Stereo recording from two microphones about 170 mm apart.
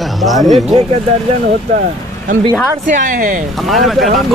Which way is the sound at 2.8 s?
50° right (ahead or behind).